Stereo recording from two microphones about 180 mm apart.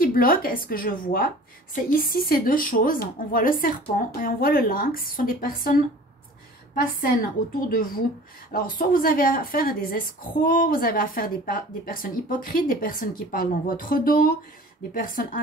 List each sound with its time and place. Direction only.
0.0 s a woman's voice: 55° left (ahead or behind)
7.6 s a woman's voice: 55° left (ahead or behind)